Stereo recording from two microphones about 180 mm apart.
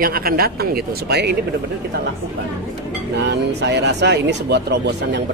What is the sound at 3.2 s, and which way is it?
Speech, 70° right (ahead or behind).